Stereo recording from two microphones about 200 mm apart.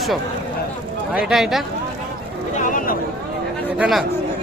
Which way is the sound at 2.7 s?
45° left (ahead or behind).